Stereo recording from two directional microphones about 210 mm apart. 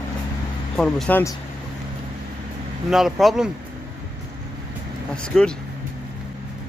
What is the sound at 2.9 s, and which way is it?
Speech, centre (ahead or behind).